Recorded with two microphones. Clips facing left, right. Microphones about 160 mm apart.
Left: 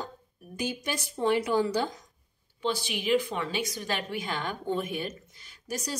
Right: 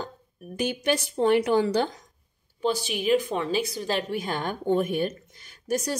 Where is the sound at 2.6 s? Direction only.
40° right (ahead or behind).